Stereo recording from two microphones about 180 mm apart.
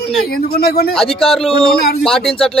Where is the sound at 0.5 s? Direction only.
60° left (ahead or behind).